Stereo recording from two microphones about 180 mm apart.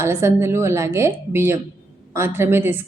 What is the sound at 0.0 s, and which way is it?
A woman's voice, 15° right (ahead or behind).